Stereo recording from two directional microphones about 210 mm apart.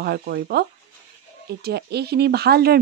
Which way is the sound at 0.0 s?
50° right (ahead or behind).